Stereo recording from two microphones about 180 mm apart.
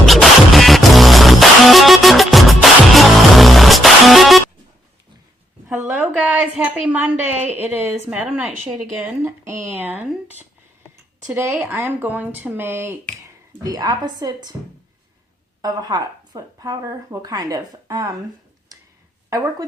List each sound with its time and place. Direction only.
0.0 s music: centre (ahead or behind)
5.6 s a sound: 10° right (ahead or behind)
7.5 s speech: 10° right (ahead or behind)
11.3 s speech: 10° right (ahead or behind)
15.6 s speech: 20° right (ahead or behind)
19.3 s speech: 20° right (ahead or behind)